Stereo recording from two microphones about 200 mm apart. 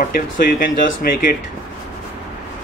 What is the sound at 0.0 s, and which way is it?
Speech, 45° left (ahead or behind).